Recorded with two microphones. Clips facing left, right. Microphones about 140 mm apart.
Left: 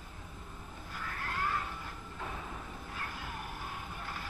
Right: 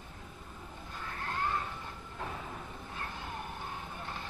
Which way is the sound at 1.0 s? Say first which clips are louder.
Right 1 dB; 25° right (ahead or behind).